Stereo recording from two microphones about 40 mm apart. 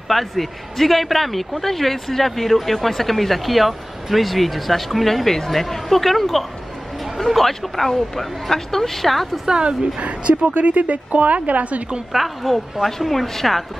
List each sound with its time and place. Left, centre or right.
0.1 s a man's voice: centre
9.5 s speech: right
12.1 s a man's voice: centre